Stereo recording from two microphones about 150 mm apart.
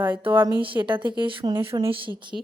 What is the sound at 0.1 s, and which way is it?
A woman's voice, 35° right (ahead or behind).